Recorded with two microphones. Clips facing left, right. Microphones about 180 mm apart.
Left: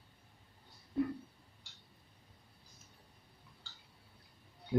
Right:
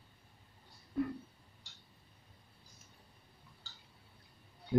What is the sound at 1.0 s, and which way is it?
Speech, 25° left (ahead or behind).